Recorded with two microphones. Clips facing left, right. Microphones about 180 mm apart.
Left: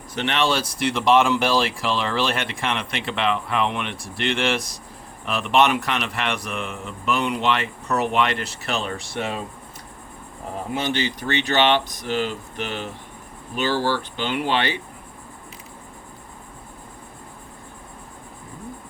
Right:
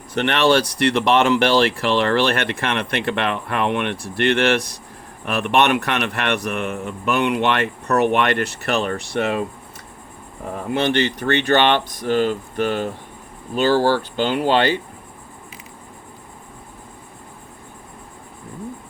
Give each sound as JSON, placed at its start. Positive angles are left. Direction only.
{"t": 0.1, "sound": "speech", "side_deg": -60}
{"t": 10.8, "sound": "speech", "side_deg": -60}